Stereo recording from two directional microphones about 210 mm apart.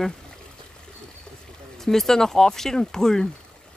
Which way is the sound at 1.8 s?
Centre (ahead or behind).